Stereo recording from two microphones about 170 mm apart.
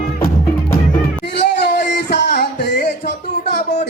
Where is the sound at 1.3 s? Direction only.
85° left.